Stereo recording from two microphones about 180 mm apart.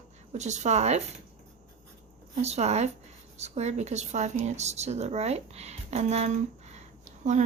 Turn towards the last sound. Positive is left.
turn(degrees=-40)  # may be behind; listen again after turning